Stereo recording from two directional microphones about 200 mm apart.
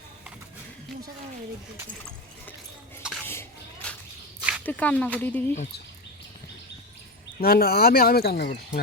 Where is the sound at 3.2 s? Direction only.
10° left (ahead or behind).